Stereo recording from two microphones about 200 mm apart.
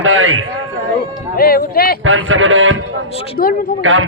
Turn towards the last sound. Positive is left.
turn(degrees=-75)  # may be behind; listen again after turning